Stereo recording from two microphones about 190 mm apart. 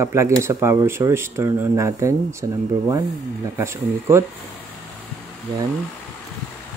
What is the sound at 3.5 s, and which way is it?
Speech, 15° right (ahead or behind).